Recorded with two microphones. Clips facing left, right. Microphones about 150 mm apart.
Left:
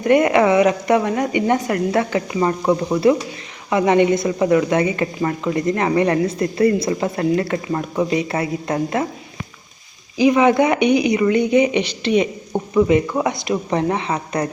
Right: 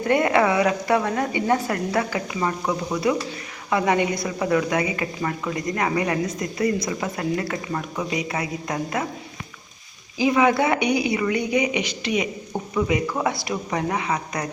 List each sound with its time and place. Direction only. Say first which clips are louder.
0.0 s a woman's voice: left 5 dB; 20° left (ahead or behind)
10.2 s a woman's voice: left 5 dB; 20° left (ahead or behind)